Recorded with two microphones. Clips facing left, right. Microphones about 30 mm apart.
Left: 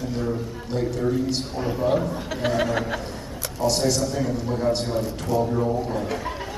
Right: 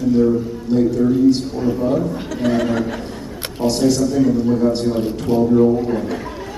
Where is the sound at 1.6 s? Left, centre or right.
Centre.